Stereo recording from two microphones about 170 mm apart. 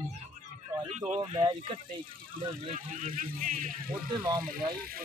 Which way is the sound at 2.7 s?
55° right (ahead or behind).